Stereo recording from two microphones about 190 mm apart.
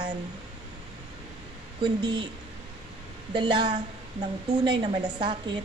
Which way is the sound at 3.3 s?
25° right (ahead or behind).